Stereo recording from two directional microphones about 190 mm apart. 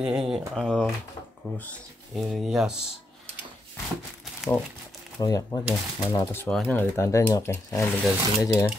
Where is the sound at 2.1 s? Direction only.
Centre (ahead or behind).